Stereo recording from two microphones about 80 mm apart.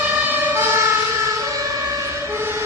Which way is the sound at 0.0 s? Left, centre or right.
Right.